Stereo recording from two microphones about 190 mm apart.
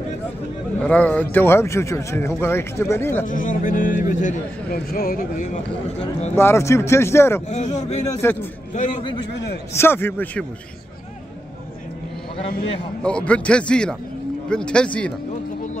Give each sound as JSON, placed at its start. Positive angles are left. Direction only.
{"t": 0.8, "sound": "speech", "side_deg": 5}
{"t": 3.3, "sound": "a man's voice", "side_deg": 45}
{"t": 6.3, "sound": "speech", "side_deg": 15}
{"t": 7.4, "sound": "speech", "side_deg": 35}
{"t": 8.2, "sound": "speech", "side_deg": 10}
{"t": 8.7, "sound": "speech", "side_deg": 40}
{"t": 9.3, "sound": "a man's voice", "side_deg": 60}
{"t": 9.8, "sound": "speech", "side_deg": 10}
{"t": 13.0, "sound": "a man's voice", "side_deg": 5}